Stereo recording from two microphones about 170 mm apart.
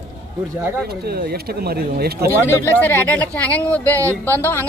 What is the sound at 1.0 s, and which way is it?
Speech, 65° right (ahead or behind).